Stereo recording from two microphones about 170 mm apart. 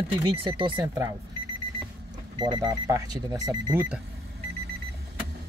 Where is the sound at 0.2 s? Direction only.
30° right (ahead or behind).